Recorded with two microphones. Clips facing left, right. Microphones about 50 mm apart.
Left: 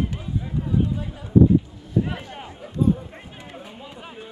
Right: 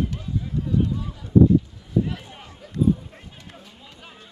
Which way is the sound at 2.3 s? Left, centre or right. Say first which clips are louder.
Left 2 dB; left.